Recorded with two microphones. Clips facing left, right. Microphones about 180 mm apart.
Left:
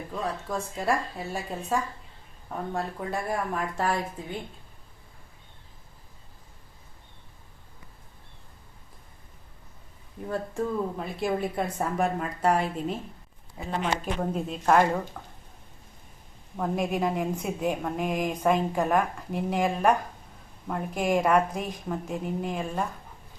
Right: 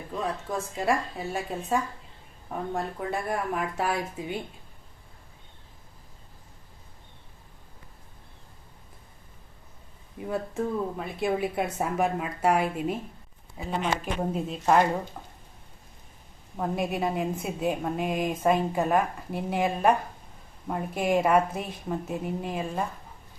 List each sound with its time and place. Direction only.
0.4 s a woman's voice: centre (ahead or behind)
10.2 s a woman's voice: 5° right (ahead or behind)
16.6 s a woman's voice: centre (ahead or behind)